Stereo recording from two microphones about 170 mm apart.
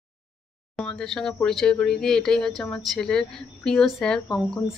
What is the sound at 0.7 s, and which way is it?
Speech, centre (ahead or behind).